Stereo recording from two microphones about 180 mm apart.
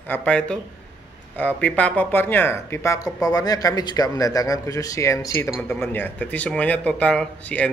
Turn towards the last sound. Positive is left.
turn(degrees=5)  # may be behind; listen again after turning